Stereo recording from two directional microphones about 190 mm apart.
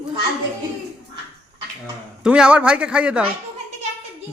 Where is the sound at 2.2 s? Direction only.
5° right (ahead or behind).